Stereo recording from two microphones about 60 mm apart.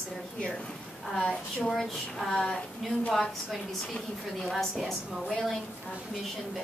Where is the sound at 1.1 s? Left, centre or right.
Centre.